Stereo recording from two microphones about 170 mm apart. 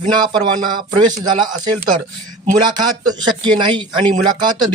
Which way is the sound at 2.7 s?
25° right (ahead or behind).